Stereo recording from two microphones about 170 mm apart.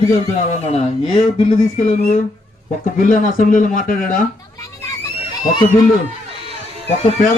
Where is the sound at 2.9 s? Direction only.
50° left (ahead or behind).